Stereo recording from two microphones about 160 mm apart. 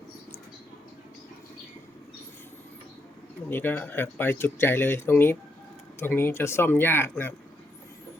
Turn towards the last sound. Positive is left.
turn(degrees=15)  # may be behind; listen again after turning